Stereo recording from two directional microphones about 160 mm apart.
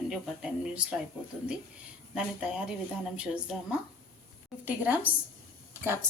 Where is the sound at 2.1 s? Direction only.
5° right (ahead or behind).